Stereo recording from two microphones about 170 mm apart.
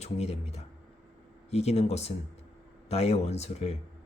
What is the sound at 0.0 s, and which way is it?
Speech, 40° left (ahead or behind).